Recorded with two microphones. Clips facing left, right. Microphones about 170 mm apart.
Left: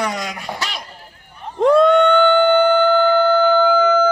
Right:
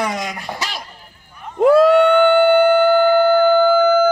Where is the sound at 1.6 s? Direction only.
5° right (ahead or behind).